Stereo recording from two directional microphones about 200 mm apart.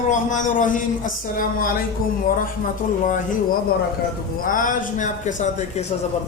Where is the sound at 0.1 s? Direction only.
40° left (ahead or behind).